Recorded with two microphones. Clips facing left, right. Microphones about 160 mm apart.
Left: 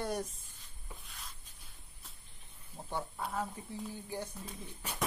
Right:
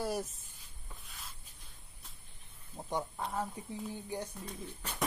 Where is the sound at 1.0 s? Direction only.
Centre (ahead or behind).